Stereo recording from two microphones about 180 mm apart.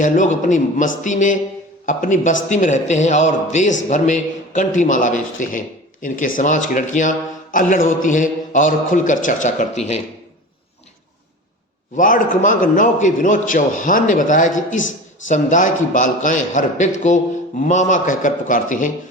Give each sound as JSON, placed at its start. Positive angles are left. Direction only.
{"t": 0.0, "sound": "a man's voice", "side_deg": 45}
{"t": 11.9, "sound": "a man's voice", "side_deg": 50}
{"t": 14.8, "sound": "speech", "side_deg": 90}
{"t": 15.3, "sound": "a man's voice", "side_deg": 45}